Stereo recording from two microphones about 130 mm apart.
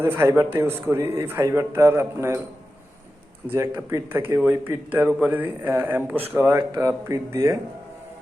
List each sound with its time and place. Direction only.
0.0 s speech: 20° right (ahead or behind)
3.4 s a man's voice: 20° right (ahead or behind)